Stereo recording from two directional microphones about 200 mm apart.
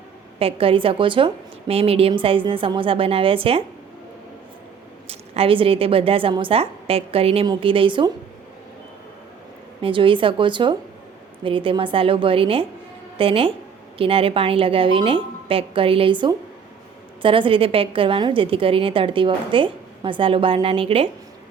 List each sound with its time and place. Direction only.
0.3 s a woman's voice: 30° right (ahead or behind)
5.0 s a woman's voice: 30° right (ahead or behind)
9.8 s a woman's voice: 25° right (ahead or behind)